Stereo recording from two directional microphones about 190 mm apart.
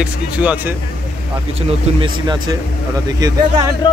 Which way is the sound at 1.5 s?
30° right (ahead or behind).